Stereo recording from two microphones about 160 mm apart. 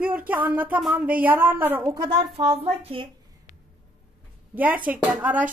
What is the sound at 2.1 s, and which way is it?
Speech, 35° right (ahead or behind).